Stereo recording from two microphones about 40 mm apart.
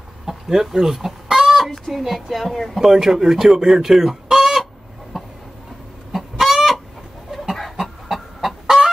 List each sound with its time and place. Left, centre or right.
0.3 s chicken: centre
1.7 s a woman's voice: centre
2.8 s speech: centre
5.1 s a sound: centre
6.1 s chicken: centre
8.1 s chicken: centre